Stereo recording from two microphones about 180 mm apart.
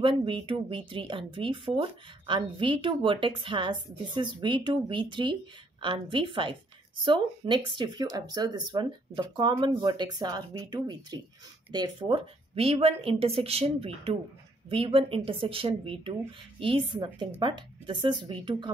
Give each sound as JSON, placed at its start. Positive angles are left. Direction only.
{"t": 0.0, "sound": "speech", "side_deg": -30}